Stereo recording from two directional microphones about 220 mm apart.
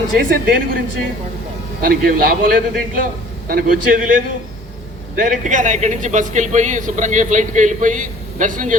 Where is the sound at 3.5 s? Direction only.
40° right (ahead or behind).